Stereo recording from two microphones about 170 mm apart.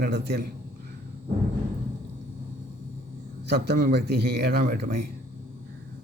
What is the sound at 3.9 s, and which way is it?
A man's voice, 75° right (ahead or behind).